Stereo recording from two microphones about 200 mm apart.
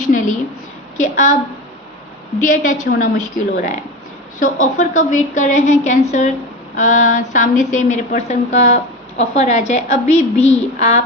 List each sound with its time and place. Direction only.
0.1 s a sound: 40° left (ahead or behind)
0.9 s a woman's voice: 40° left (ahead or behind)
2.4 s a woman's voice: 40° left (ahead or behind)